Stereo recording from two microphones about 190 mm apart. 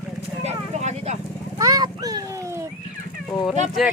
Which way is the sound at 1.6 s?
20° right (ahead or behind).